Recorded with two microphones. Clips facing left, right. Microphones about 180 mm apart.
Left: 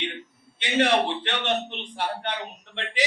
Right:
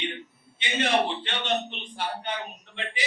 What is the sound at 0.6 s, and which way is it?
A man's voice, 70° left (ahead or behind).